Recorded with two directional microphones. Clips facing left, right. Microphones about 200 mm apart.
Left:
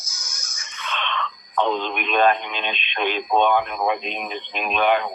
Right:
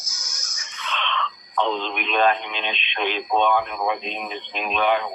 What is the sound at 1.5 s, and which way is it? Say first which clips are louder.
Speech: left 2 dB; 50° left (ahead or behind).